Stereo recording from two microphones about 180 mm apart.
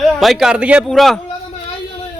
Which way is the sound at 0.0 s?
Centre (ahead or behind).